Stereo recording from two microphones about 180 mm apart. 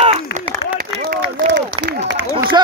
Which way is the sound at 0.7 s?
60° right (ahead or behind).